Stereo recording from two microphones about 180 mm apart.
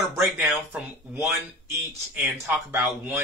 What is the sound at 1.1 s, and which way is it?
Speech, 15° right (ahead or behind).